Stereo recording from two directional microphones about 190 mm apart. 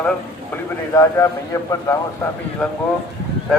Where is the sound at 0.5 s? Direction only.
15° left (ahead or behind).